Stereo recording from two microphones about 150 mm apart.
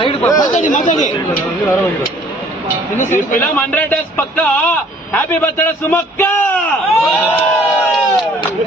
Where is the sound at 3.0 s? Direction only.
55° left (ahead or behind).